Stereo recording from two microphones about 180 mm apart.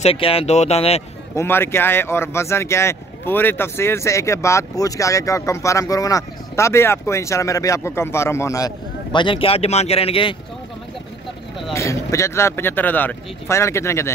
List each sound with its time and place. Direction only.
0.0 s speech: 30° left (ahead or behind)
1.3 s speech: 15° left (ahead or behind); by 10.3 s 30° left (ahead or behind)
11.7 s speech: 15° left (ahead or behind)